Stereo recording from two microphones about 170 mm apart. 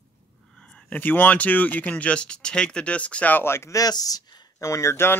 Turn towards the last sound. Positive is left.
turn(degrees=15)  # may be behind; listen again after turning